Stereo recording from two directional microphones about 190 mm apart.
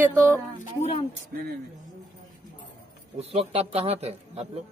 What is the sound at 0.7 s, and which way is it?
Speech, 35° left (ahead or behind).